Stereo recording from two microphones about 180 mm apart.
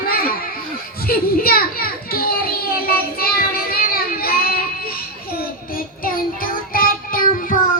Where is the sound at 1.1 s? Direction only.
55° left (ahead or behind).